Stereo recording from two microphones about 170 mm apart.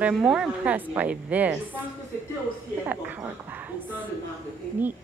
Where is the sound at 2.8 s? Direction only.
10° right (ahead or behind).